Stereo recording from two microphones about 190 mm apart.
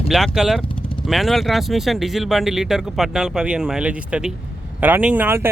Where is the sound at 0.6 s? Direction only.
30° left (ahead or behind).